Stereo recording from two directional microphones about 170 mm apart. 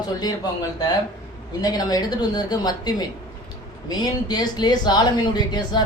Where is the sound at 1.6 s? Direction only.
20° left (ahead or behind).